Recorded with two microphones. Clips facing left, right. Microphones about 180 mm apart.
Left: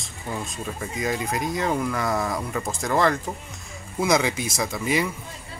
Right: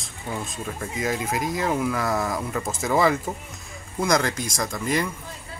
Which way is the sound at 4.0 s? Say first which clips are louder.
Left 1 dB; 5° left (ahead or behind).